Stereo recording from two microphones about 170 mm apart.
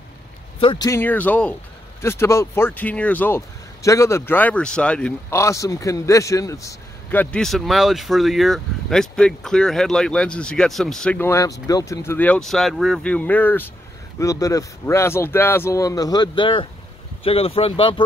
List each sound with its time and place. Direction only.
0.6 s speech: 30° left (ahead or behind)
0.8 s speech: 15° left (ahead or behind); by 18.0 s 30° left (ahead or behind)